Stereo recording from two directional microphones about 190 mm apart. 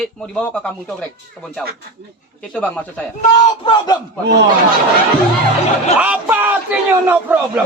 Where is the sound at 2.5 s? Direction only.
5° left (ahead or behind).